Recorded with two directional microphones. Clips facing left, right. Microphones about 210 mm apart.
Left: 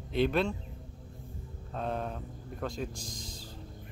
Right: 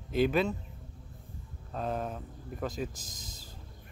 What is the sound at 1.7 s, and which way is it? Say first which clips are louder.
A man's voice: right 1 dB; centre (ahead or behind).